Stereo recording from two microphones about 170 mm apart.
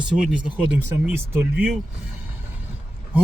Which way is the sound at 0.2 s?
5° right (ahead or behind).